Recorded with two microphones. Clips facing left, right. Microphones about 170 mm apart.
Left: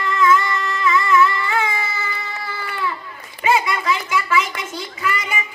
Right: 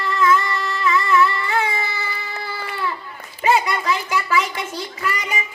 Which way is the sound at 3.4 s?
35° right (ahead or behind).